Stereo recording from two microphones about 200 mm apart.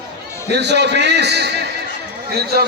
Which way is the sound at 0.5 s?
60° right (ahead or behind).